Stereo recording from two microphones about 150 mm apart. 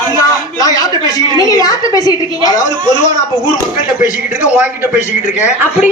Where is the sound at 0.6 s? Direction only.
25° left (ahead or behind).